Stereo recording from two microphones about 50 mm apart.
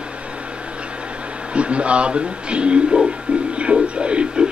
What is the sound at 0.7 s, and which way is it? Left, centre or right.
Speech, right.